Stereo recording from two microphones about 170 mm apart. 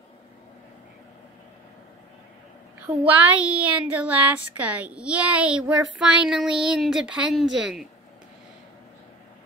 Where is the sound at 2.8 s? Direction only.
10° right (ahead or behind).